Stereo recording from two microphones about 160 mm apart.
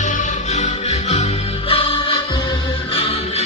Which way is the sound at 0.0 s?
50° left (ahead or behind).